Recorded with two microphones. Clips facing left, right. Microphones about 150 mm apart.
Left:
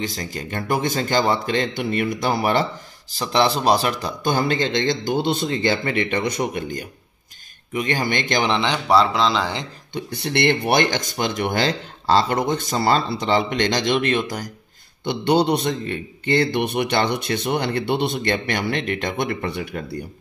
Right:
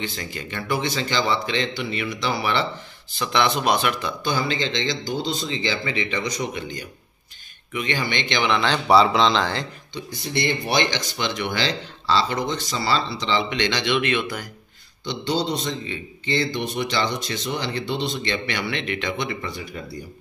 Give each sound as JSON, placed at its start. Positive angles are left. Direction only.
{"t": 0.0, "sound": "speech", "side_deg": 40}
{"t": 3.1, "sound": "speech", "side_deg": 35}
{"t": 8.5, "sound": "speech", "side_deg": 15}
{"t": 8.8, "sound": "speech", "side_deg": 0}
{"t": 9.9, "sound": "speech", "side_deg": 65}
{"t": 15.0, "sound": "a man's voice", "side_deg": 60}